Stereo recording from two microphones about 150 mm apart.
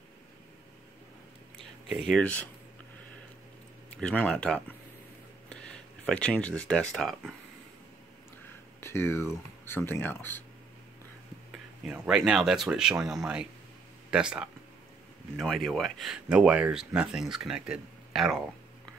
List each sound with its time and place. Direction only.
2.0 s speech: 5° left (ahead or behind)
3.9 s speech: 5° left (ahead or behind)
8.8 s speech: 15° left (ahead or behind)
11.5 s speech: 5° right (ahead or behind)